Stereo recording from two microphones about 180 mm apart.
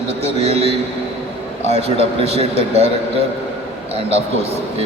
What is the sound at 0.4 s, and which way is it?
Speech, 30° right (ahead or behind).